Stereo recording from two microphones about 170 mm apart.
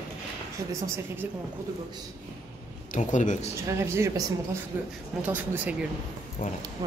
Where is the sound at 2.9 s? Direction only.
45° left (ahead or behind).